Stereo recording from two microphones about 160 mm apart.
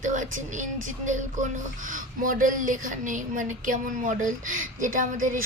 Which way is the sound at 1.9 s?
55° right (ahead or behind).